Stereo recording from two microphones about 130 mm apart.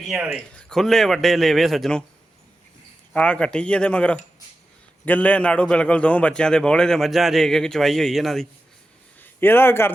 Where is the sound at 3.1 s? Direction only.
10° left (ahead or behind).